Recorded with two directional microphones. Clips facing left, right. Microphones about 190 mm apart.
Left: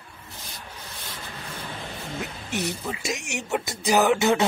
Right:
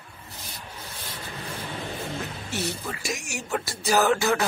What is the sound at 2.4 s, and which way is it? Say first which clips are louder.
Speech: left 3 dB; 15° left (ahead or behind).